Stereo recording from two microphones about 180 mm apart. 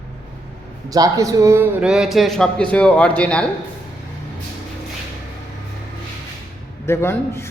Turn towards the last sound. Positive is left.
turn(degrees=15)  # may be behind; listen again after turning